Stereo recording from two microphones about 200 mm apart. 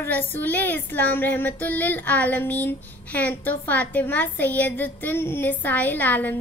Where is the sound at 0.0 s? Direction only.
10° left (ahead or behind).